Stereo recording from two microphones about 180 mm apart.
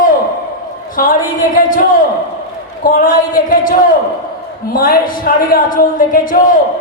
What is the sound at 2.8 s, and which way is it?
Speech, 50° left (ahead or behind).